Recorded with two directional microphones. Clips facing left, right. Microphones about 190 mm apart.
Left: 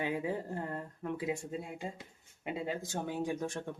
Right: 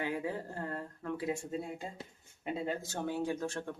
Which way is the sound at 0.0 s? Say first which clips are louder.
Left 1 dB; 20° left (ahead or behind).